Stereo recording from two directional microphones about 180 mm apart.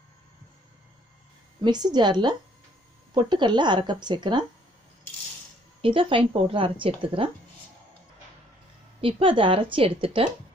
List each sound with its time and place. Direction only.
1.6 s a woman's voice: 20° right (ahead or behind)
5.8 s a woman's voice: 30° right (ahead or behind)
9.0 s a woman's voice: 30° right (ahead or behind)